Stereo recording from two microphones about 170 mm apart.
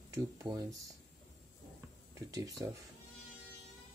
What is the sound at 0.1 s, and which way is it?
Speech, 15° right (ahead or behind).